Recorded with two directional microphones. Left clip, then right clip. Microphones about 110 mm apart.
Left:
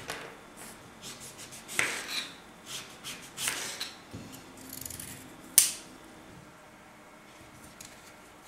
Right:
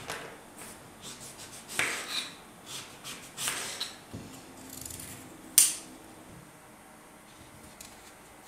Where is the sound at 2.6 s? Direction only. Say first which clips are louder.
Left 1 dB; centre (ahead or behind).